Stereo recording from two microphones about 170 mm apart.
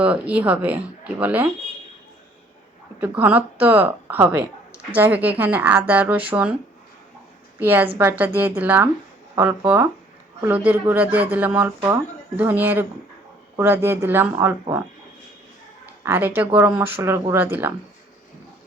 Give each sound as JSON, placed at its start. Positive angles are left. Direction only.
{"t": 0.0, "sound": "speech", "side_deg": -10}
{"t": 3.0, "sound": "speech", "side_deg": -10}
{"t": 7.6, "sound": "speech", "side_deg": -10}
{"t": 16.0, "sound": "speech", "side_deg": -10}